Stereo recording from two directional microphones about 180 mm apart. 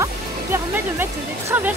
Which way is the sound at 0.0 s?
15° right (ahead or behind).